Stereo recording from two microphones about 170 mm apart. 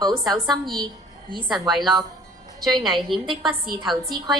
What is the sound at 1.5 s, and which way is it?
A woman's voice, centre (ahead or behind).